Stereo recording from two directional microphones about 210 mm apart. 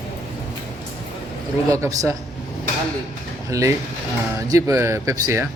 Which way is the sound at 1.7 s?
15° right (ahead or behind).